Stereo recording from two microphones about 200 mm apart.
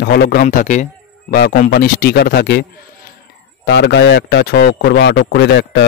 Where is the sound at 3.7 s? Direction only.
60° left (ahead or behind).